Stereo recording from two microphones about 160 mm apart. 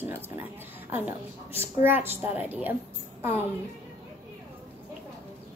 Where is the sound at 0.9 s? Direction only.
15° right (ahead or behind).